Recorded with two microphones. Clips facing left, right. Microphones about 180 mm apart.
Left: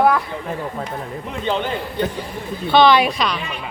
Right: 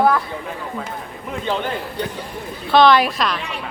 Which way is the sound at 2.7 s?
Centre (ahead or behind).